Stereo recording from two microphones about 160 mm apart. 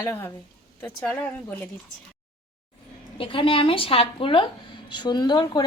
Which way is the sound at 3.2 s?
35° left (ahead or behind).